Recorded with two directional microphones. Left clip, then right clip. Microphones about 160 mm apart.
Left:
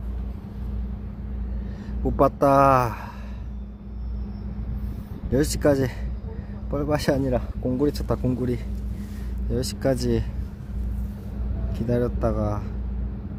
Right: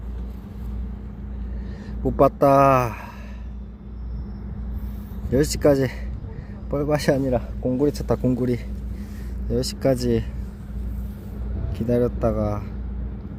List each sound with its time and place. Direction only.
2.0 s speech: 10° right (ahead or behind)
5.5 s speech: 15° right (ahead or behind)
7.9 s speech: 25° right (ahead or behind)
9.5 s speech: 10° right (ahead or behind)
11.9 s speech: 15° right (ahead or behind)